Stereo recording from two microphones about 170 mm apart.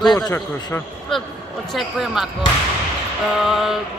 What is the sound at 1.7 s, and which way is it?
Speech, centre (ahead or behind).